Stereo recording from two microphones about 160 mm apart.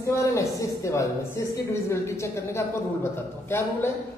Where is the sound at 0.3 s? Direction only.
20° left (ahead or behind).